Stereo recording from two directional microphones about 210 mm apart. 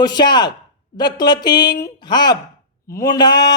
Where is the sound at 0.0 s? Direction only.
20° left (ahead or behind).